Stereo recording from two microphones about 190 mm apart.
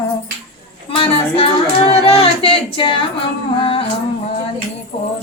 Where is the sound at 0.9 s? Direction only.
30° left (ahead or behind).